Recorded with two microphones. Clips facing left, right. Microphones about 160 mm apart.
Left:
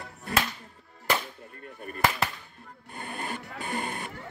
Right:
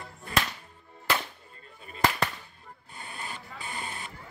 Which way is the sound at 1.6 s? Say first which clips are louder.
Left 9 dB; 60° left (ahead or behind).